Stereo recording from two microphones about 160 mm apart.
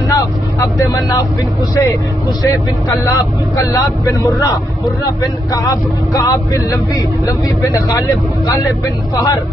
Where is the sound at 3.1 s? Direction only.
20° left (ahead or behind).